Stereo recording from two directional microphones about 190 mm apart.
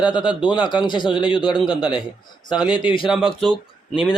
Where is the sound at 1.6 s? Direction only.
5° right (ahead or behind).